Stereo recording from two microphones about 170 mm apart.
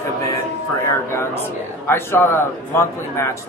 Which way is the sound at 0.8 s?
15° left (ahead or behind).